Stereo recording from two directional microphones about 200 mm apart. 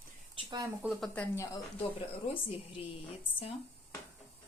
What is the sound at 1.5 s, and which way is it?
Speech, 25° left (ahead or behind).